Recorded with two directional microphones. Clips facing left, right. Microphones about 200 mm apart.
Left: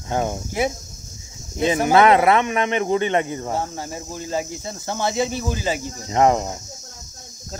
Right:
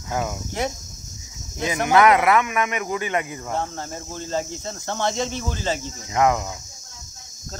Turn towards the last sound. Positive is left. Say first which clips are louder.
# left 3 dB
turn(degrees=35)  # may be behind; listen again after turning